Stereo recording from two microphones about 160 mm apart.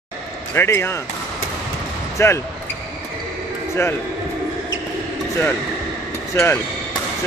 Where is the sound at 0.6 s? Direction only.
15° left (ahead or behind).